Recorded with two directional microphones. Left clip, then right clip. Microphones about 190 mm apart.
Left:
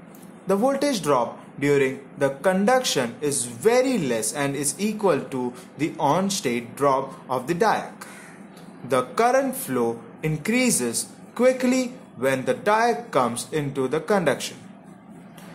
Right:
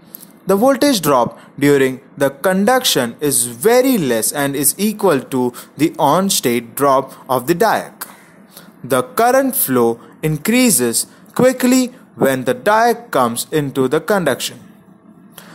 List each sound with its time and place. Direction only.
0.5 s a man's voice: 40° right (ahead or behind)